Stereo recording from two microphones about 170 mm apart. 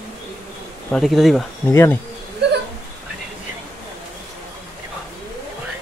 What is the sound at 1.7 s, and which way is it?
Speech, 15° left (ahead or behind).